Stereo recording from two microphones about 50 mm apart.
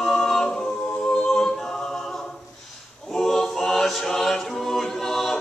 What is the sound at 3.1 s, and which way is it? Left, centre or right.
Choir, centre.